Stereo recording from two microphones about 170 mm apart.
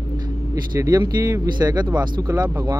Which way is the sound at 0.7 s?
20° right (ahead or behind).